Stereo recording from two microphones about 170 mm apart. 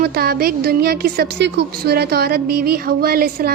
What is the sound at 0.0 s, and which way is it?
A woman's voice, 65° right (ahead or behind).